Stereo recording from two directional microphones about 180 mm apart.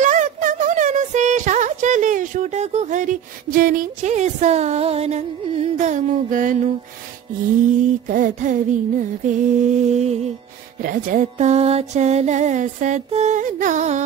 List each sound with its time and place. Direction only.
0.0 s a sound: 45° right (ahead or behind)
7.8 s music: 45° right (ahead or behind)
10.8 s music: 50° right (ahead or behind)